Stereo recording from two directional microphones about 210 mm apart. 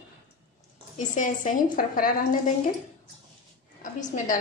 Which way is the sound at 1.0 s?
35° left (ahead or behind).